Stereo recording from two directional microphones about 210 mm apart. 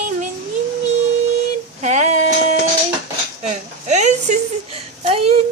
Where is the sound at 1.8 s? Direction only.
35° right (ahead or behind).